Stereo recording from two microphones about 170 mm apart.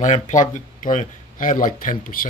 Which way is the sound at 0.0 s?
45° left (ahead or behind).